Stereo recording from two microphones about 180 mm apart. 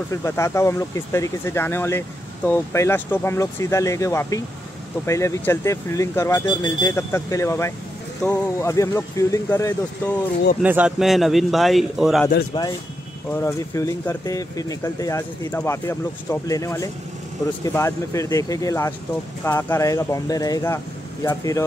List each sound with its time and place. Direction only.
0.1 s speech: 15° left (ahead or behind)
10.6 s a man's voice: 10° right (ahead or behind)
12.5 s speech: 25° left (ahead or behind)
13.3 s speech: 15° left (ahead or behind)